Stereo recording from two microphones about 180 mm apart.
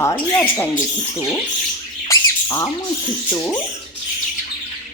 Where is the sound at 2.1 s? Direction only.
15° left (ahead or behind).